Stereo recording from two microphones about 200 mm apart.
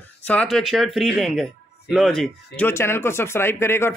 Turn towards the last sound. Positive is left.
turn(degrees=15)  # may be behind; listen again after turning